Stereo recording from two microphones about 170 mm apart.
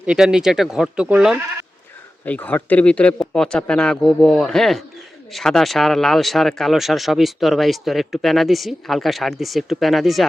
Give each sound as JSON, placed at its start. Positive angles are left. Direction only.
{"t": 0.0, "sound": "speech", "side_deg": -5}
{"t": 2.2, "sound": "speech", "side_deg": 10}